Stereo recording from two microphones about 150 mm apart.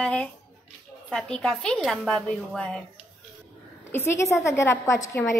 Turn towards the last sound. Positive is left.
turn(degrees=20)  # may be behind; listen again after turning